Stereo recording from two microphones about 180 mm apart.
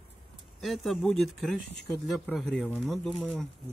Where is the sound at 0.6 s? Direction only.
Centre (ahead or behind).